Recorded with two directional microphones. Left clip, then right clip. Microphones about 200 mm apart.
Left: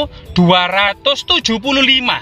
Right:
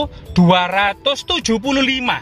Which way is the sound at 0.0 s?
45° right (ahead or behind).